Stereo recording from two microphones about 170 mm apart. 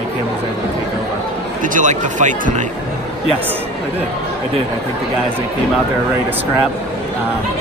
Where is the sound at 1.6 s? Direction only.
50° right (ahead or behind).